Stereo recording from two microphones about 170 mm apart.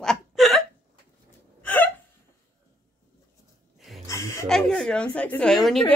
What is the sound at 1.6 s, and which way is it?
Hiccup, 10° left (ahead or behind).